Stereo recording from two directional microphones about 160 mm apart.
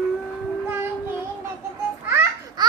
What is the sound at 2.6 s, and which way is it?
Laughter, 25° right (ahead or behind).